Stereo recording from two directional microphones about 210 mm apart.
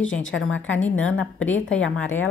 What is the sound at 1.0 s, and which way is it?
Speech, 70° left (ahead or behind).